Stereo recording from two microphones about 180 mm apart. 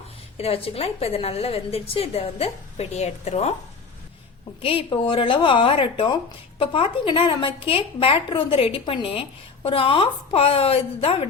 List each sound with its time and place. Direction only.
0.3 s a woman's voice: 35° left (ahead or behind)
4.6 s a woman's voice: 30° left (ahead or behind)